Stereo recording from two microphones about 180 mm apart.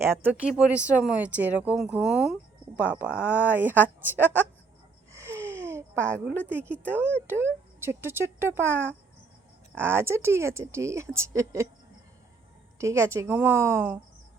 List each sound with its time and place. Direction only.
0.0 s speech: 15° right (ahead or behind)
5.2 s a sound: 15° right (ahead or behind)
6.5 s speech: 10° right (ahead or behind)
12.8 s speech: 15° right (ahead or behind)